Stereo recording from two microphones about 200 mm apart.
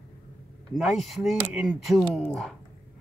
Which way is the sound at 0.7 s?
Centre (ahead or behind).